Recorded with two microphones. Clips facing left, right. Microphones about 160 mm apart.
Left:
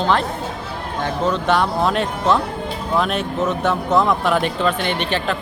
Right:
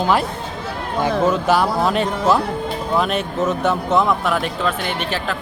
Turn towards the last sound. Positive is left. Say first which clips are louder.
# left 2 dB
turn(degrees=-5)  # may be behind; listen again after turning